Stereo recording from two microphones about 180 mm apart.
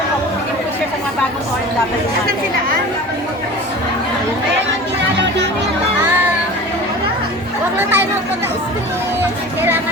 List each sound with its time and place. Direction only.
7.8 s chatter: 10° right (ahead or behind)
9.6 s speech: 10° right (ahead or behind)